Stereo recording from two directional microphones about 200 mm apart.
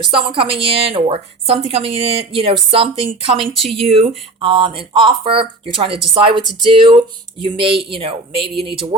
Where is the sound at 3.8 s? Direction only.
30° right (ahead or behind).